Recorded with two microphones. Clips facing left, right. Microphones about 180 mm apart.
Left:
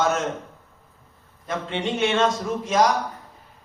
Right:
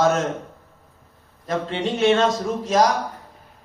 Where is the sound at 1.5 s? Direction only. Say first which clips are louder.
Right 3 dB; 35° right (ahead or behind).